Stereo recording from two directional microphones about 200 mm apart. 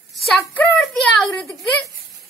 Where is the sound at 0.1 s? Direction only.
Centre (ahead or behind).